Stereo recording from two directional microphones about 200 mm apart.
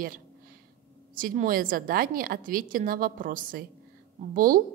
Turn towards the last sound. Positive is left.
turn(degrees=-45)  # may be behind; listen again after turning